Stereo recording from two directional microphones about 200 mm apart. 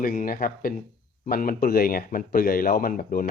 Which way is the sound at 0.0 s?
45° left (ahead or behind).